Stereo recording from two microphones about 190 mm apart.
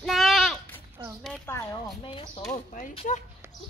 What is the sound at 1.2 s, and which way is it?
Speech, 5° left (ahead or behind).